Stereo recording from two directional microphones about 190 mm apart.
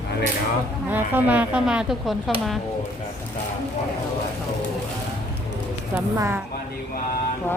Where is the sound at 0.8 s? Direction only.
10° right (ahead or behind).